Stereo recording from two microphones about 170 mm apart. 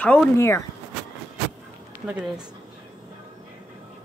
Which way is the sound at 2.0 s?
5° right (ahead or behind).